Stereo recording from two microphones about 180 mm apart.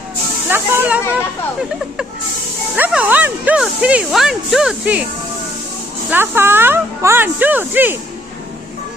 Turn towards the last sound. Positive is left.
turn(degrees=-10)  # may be behind; listen again after turning